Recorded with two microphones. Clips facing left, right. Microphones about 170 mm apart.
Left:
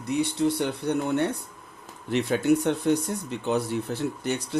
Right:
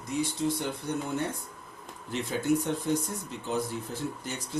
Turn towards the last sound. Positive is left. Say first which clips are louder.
# left 8 dB
turn(degrees=70)  # may be behind; listen again after turning